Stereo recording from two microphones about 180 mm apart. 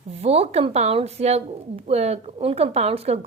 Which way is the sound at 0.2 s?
35° right (ahead or behind).